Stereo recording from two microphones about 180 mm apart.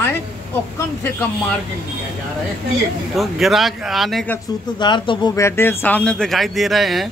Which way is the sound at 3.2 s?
Centre (ahead or behind).